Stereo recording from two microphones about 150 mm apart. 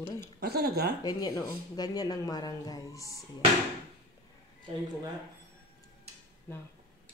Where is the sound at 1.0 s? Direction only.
25° left (ahead or behind).